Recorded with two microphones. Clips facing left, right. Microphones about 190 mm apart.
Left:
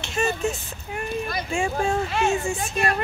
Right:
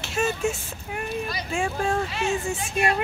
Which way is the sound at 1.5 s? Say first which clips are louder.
Left 1 dB; centre (ahead or behind).